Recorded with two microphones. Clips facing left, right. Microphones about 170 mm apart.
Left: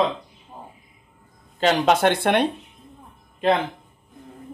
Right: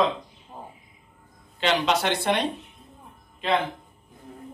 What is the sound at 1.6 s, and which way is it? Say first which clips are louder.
Speech: left 5 dB; 45° left (ahead or behind).